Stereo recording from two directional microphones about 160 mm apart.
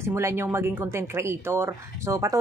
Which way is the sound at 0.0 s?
15° right (ahead or behind).